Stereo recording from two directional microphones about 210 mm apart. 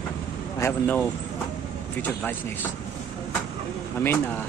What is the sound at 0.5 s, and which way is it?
Speech, 10° left (ahead or behind).